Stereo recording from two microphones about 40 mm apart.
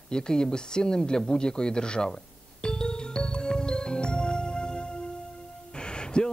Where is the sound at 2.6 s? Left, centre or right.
Left.